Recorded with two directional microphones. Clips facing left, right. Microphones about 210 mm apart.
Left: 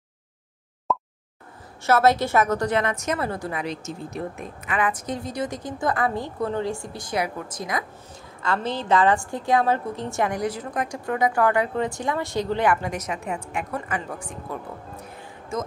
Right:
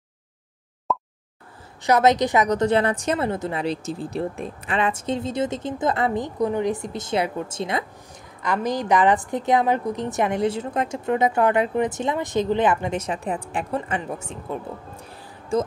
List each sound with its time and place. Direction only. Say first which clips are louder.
0.9 s a sound: even; centre (ahead or behind)
1.8 s a woman's voice: right 1 dB; 15° right (ahead or behind)
8.4 s a woman's voice: right 3 dB; 15° right (ahead or behind); by 15.7 s 30° right (ahead or behind)